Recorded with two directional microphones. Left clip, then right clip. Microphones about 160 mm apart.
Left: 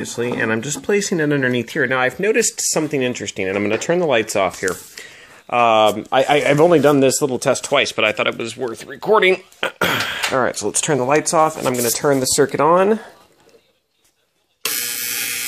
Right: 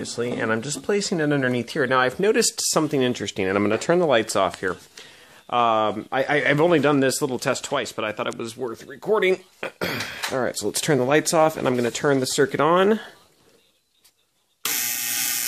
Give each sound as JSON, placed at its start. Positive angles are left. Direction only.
{"t": 0.0, "sound": "speech", "side_deg": 10}
{"t": 9.6, "sound": "throat clearing", "side_deg": -5}
{"t": 10.7, "sound": "speech", "side_deg": -50}
{"t": 11.0, "sound": "speech", "side_deg": -30}
{"t": 12.6, "sound": "speech", "side_deg": -20}